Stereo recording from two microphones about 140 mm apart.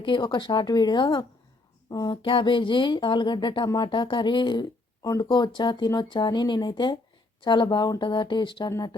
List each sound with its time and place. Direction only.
0.0 s speech: 35° left (ahead or behind)